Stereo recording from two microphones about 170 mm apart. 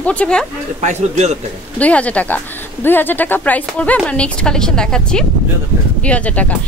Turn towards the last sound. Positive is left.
turn(degrees=10)  # may be behind; listen again after turning